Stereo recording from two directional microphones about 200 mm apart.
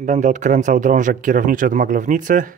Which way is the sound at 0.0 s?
40° right (ahead or behind).